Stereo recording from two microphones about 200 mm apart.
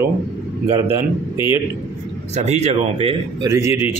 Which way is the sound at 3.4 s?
15° right (ahead or behind).